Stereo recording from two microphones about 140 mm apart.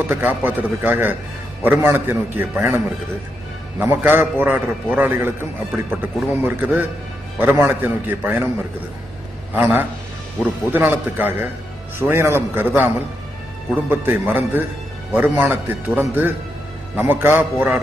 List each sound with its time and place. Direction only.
0.1 s a man's voice: 15° right (ahead or behind)
3.8 s a man's voice: 15° right (ahead or behind)
9.6 s a man's voice: 10° right (ahead or behind)